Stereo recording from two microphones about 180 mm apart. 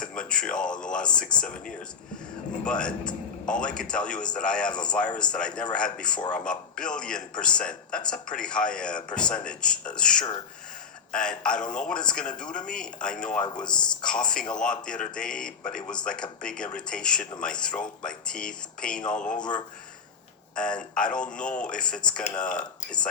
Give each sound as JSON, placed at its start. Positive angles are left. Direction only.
{"t": 0.0, "sound": "speech", "side_deg": 5}